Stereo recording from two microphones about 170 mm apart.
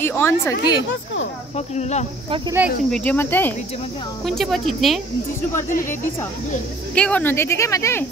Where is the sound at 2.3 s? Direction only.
30° right (ahead or behind).